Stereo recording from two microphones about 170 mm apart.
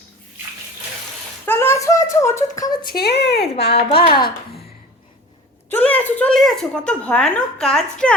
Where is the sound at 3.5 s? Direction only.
70° left (ahead or behind).